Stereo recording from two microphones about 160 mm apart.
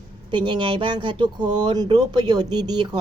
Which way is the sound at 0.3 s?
30° right (ahead or behind).